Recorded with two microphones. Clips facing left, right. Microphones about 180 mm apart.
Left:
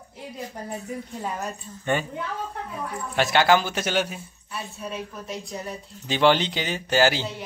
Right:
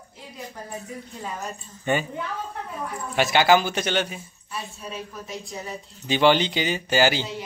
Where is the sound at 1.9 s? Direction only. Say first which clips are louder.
Right 1 dB; 5° right (ahead or behind).